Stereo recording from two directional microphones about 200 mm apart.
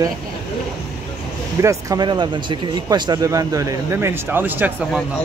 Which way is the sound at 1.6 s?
15° right (ahead or behind).